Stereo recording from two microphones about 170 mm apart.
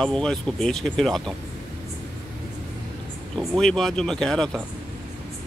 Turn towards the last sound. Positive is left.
turn(degrees=5)  # may be behind; listen again after turning